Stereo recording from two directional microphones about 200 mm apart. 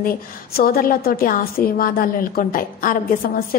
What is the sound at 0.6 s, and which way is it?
A woman's voice, 45° left (ahead or behind).